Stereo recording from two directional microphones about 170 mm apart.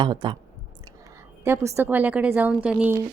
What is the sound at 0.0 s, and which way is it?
Speech, 30° right (ahead or behind).